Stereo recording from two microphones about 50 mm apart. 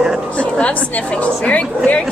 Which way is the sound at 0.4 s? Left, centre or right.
Left.